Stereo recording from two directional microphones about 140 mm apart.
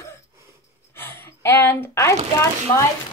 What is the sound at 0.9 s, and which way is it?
Speech, 15° left (ahead or behind).